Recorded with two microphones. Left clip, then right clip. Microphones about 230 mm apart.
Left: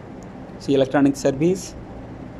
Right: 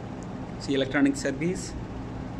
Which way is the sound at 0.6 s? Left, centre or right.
Centre.